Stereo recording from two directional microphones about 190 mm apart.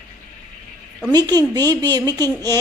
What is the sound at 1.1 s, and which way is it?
A woman's voice, 20° right (ahead or behind).